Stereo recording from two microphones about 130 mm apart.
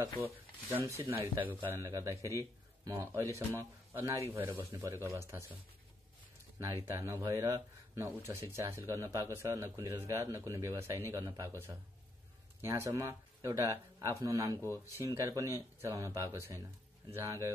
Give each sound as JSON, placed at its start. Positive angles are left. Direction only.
{"t": 0.2, "sound": "speech", "side_deg": -20}
{"t": 6.6, "sound": "speech", "side_deg": -20}
{"t": 12.6, "sound": "speech", "side_deg": -20}
{"t": 14.6, "sound": "speech", "side_deg": 20}
{"t": 15.0, "sound": "speech", "side_deg": -25}